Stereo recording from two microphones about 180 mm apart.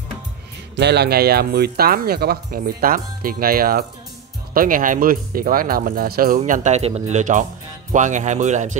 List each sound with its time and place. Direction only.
0.7 s speech: 65° right (ahead or behind); by 8.7 s 40° right (ahead or behind)